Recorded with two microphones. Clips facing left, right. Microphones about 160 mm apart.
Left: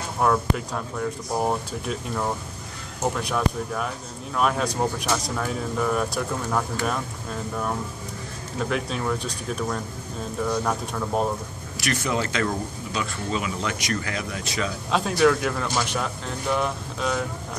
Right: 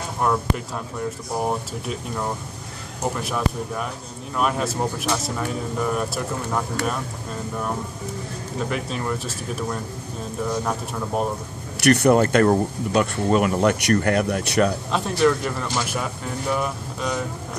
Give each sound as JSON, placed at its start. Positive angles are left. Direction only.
{"t": 0.2, "sound": "speech", "side_deg": 0}
{"t": 8.6, "sound": "speech", "side_deg": 0}
{"t": 11.8, "sound": "speech", "side_deg": -65}
{"t": 14.9, "sound": "speech", "side_deg": 0}